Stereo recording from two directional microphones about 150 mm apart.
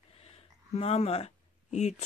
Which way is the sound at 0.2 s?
40° left (ahead or behind).